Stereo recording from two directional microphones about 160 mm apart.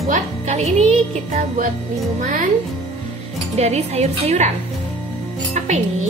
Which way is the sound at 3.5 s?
45° right (ahead or behind).